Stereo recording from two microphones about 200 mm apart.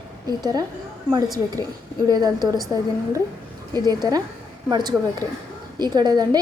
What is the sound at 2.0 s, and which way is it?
Speech, 20° right (ahead or behind).